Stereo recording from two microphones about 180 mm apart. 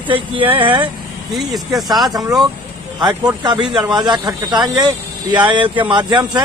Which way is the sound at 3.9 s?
25° right (ahead or behind).